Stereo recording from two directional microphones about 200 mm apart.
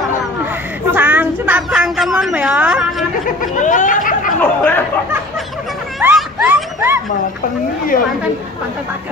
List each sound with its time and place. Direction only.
0.9 s a woman's voice: 10° right (ahead or behind)
3.5 s speech: 40° left (ahead or behind)
4.4 s speech: 10° left (ahead or behind)
5.9 s a sound: 5° right (ahead or behind)